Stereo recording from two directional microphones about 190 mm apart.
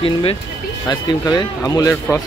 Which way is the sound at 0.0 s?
30° left (ahead or behind).